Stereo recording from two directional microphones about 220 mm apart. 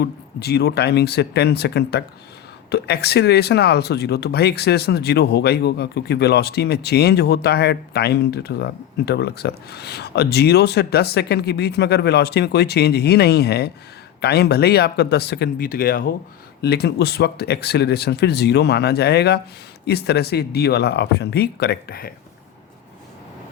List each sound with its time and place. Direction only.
0.0 s speech: 45° left (ahead or behind)